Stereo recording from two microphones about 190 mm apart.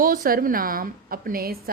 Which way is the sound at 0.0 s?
50° right (ahead or behind).